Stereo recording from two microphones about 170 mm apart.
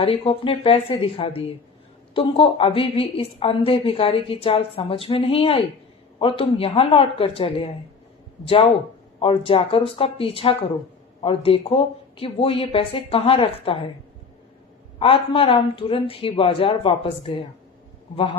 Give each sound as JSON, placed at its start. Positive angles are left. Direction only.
{"t": 0.0, "sound": "speech", "side_deg": 30}
{"t": 9.2, "sound": "speech", "side_deg": 35}
{"t": 14.9, "sound": "speech", "side_deg": 35}